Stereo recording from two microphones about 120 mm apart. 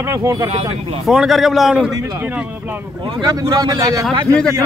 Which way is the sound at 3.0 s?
40° right (ahead or behind).